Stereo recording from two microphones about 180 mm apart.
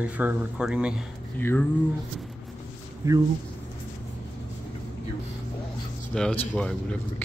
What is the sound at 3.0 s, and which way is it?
Speech, 15° right (ahead or behind).